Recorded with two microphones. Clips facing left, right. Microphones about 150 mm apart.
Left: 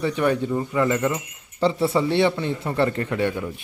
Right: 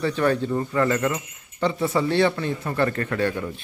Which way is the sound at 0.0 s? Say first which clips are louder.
Even; 15° left (ahead or behind).